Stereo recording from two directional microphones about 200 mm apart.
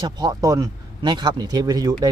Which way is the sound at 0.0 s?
20° right (ahead or behind).